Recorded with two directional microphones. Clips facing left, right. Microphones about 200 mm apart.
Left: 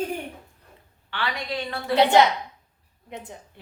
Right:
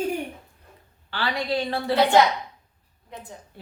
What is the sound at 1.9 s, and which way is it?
A woman's voice, 20° left (ahead or behind).